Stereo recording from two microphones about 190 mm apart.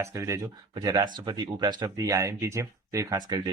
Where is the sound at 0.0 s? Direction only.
15° right (ahead or behind).